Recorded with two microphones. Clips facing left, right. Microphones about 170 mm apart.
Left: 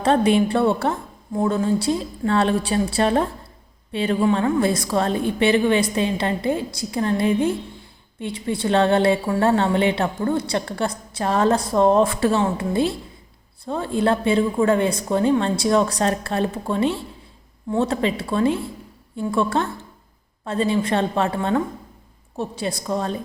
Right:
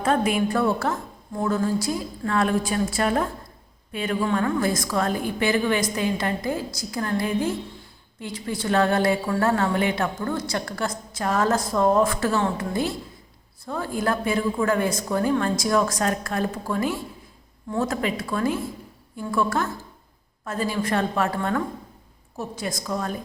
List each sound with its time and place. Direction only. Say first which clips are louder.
0.0 s a woman's voice: left 5 dB; 30° left (ahead or behind)